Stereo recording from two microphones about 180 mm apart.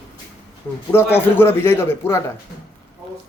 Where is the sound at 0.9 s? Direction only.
10° left (ahead or behind).